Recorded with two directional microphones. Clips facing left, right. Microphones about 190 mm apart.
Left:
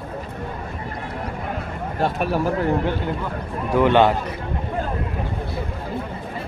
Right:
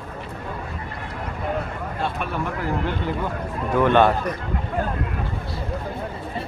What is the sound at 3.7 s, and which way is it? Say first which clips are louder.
Speech: left 1 dB; 15° left (ahead or behind).